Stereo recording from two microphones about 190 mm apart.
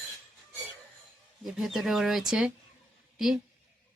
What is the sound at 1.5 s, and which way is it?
Speech, centre (ahead or behind).